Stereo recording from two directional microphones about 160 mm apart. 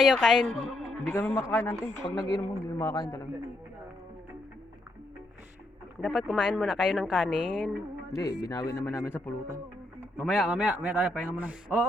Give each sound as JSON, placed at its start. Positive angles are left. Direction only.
{"t": 0.0, "sound": "a woman's voice", "side_deg": 0}
{"t": 1.1, "sound": "a man's voice", "side_deg": 15}
{"t": 6.0, "sound": "speech", "side_deg": 0}
{"t": 8.1, "sound": "speech", "side_deg": 20}
{"t": 10.2, "sound": "speech", "side_deg": 0}